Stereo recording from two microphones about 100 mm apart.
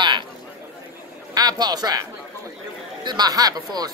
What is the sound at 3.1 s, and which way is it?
Speech, 40° right (ahead or behind).